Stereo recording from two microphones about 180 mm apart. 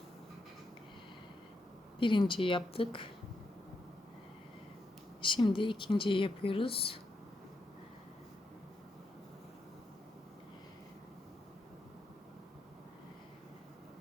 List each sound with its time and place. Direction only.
2.0 s speech: 25° left (ahead or behind)
5.2 s speech: 25° left (ahead or behind)